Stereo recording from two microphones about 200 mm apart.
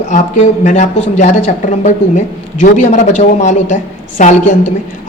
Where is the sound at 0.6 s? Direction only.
35° left (ahead or behind).